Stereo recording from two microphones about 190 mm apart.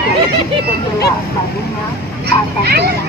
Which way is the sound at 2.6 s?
60° right (ahead or behind).